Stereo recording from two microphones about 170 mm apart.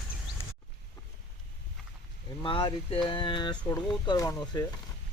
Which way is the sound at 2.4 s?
30° left (ahead or behind).